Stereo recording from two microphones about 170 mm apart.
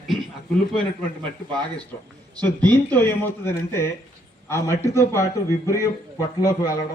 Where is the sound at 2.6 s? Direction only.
10° left (ahead or behind).